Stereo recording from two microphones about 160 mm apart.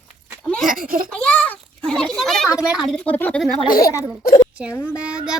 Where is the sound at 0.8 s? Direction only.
60° right (ahead or behind).